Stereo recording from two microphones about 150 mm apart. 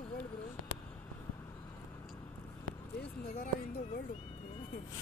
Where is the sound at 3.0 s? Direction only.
80° left.